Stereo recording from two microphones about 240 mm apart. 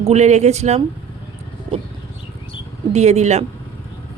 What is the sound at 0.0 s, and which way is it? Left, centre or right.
Speech, right.